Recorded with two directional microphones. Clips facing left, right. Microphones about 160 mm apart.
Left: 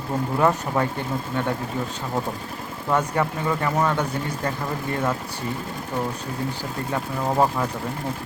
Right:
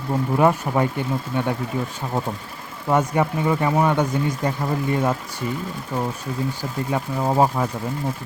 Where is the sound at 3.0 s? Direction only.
15° right (ahead or behind).